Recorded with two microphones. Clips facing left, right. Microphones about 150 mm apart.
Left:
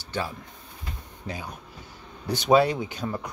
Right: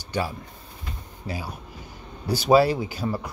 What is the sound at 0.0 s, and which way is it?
Speech, 10° right (ahead or behind).